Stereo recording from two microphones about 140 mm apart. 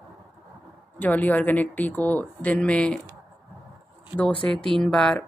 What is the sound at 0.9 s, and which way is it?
A woman's voice, 10° left (ahead or behind).